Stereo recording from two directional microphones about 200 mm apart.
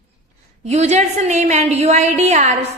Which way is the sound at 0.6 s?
35° right (ahead or behind).